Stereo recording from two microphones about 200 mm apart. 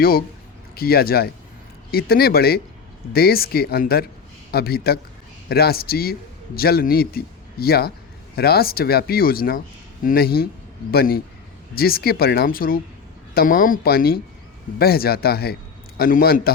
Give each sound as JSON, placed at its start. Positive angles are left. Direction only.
{"t": 0.8, "sound": "a man's voice", "side_deg": 50}